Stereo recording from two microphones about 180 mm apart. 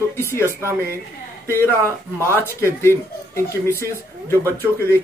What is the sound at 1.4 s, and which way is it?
Speech, 15° left (ahead or behind).